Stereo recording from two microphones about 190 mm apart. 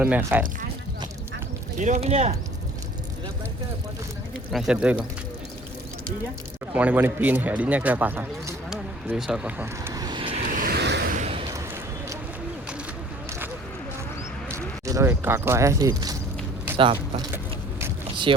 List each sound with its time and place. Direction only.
0.0 s speech: 10° right (ahead or behind)
1.8 s speech: 35° right (ahead or behind)
4.5 s speech: 5° right (ahead or behind)
6.7 s speech: 10° right (ahead or behind); by 10.4 s 25° right (ahead or behind)
10.4 s vehicle: 45° right (ahead or behind); by 11.1 s 60° right (ahead or behind)
11.1 s a sound: 35° right (ahead or behind)
11.5 s a sound: 15° right (ahead or behind)
14.5 s speech: 15° right (ahead or behind)
17.3 s vehicle: 10° right (ahead or behind)
18.3 s speech: 30° right (ahead or behind)